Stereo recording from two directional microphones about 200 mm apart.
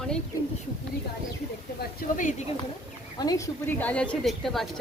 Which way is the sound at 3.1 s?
20° left (ahead or behind).